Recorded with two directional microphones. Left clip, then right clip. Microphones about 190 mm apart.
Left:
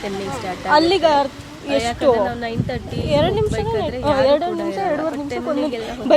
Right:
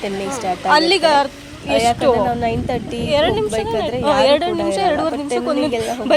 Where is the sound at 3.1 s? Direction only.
Centre (ahead or behind).